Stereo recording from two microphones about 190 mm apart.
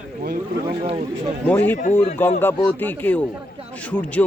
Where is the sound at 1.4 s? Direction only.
10° left (ahead or behind).